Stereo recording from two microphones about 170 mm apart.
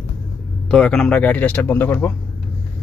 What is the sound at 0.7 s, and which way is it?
Speech, 5° left (ahead or behind).